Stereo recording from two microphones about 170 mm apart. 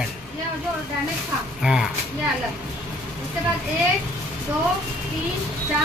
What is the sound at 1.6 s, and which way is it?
Speech, centre (ahead or behind).